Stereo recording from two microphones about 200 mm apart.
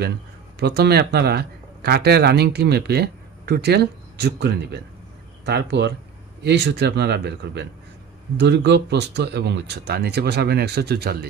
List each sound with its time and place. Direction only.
0.6 s a man's voice: 55° right (ahead or behind)